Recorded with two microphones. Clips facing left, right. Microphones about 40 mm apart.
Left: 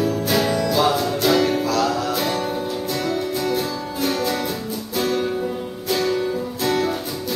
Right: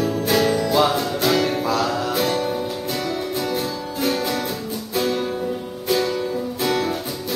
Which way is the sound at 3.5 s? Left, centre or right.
Centre.